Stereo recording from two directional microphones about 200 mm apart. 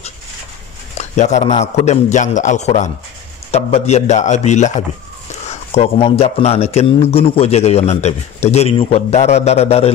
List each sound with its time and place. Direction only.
0.9 s a man's voice: 35° left (ahead or behind)